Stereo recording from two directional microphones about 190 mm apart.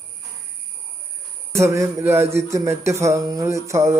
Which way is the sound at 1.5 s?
15° right (ahead or behind).